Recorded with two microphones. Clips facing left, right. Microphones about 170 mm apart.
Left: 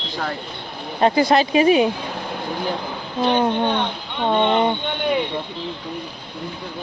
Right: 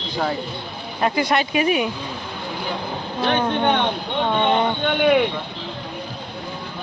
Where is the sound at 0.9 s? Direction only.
30° left (ahead or behind).